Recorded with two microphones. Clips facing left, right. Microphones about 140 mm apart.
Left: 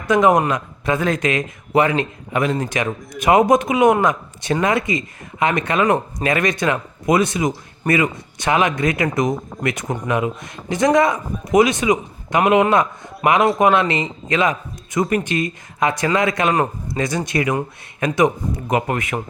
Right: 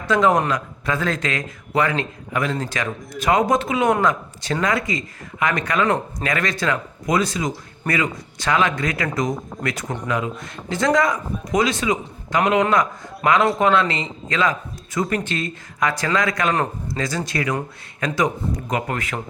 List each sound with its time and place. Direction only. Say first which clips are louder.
0.1 s speech: left 3 dB; 20° left (ahead or behind)